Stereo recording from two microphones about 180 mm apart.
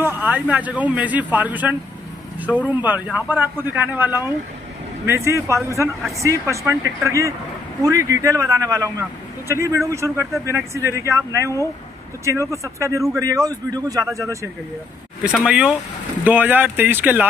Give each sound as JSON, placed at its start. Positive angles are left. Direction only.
{"t": 0.0, "sound": "a man's voice", "side_deg": -10}
{"t": 15.3, "sound": "a man's voice", "side_deg": -5}